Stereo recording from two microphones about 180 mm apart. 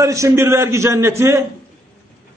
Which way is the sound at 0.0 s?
15° right (ahead or behind).